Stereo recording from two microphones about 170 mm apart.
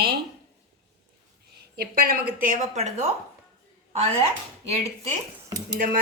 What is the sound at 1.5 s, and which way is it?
A woman's voice, 65° right (ahead or behind).